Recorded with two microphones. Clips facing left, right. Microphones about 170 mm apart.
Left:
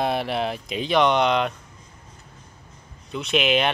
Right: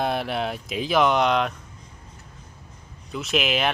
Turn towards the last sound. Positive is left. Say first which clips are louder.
# left 3 dB
turn(degrees=0)  # may be behind; listen again after turning